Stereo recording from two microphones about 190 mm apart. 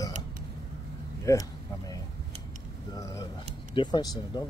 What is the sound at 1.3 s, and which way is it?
Speech, 15° left (ahead or behind).